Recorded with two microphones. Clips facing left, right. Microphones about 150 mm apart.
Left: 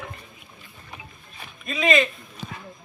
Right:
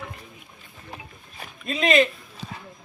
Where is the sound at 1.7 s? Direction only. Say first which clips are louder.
Right 1 dB; 30° right (ahead or behind).